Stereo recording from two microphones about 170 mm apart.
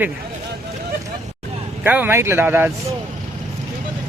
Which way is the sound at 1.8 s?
10° right (ahead or behind).